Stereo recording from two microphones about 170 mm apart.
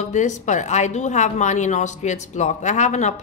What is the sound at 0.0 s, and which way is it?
A woman's voice, 45° left (ahead or behind).